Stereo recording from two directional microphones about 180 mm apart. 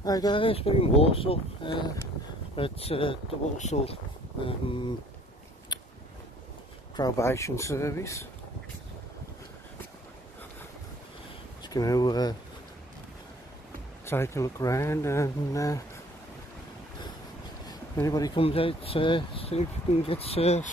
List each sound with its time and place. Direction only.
0.0 s speech: 20° left (ahead or behind)
5.7 s biting: 25° left (ahead or behind)
7.0 s speech: 20° left (ahead or behind)
11.6 s speech: 20° left (ahead or behind)
14.0 s speech: 15° left (ahead or behind)
17.6 s a sound: 20° left (ahead or behind)
18.4 s speech: 30° left (ahead or behind)